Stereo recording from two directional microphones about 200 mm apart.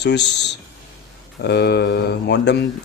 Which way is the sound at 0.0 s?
60° left (ahead or behind).